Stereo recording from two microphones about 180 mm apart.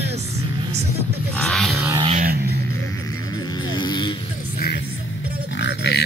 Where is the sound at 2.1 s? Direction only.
50° right (ahead or behind).